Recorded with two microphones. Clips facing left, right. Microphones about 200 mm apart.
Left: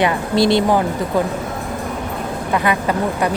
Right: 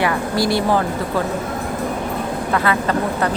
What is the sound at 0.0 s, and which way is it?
Speech, 20° left (ahead or behind).